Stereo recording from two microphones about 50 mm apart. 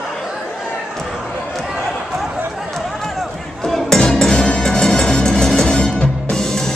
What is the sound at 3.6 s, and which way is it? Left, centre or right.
Music, centre.